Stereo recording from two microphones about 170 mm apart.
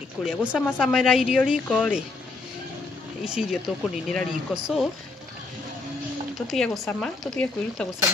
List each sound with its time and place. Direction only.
0.2 s speech: 5° right (ahead or behind)
3.3 s speech: 5° right (ahead or behind)
6.4 s speech: centre (ahead or behind)